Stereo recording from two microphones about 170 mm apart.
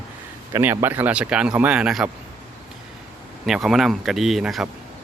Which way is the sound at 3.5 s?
Centre (ahead or behind).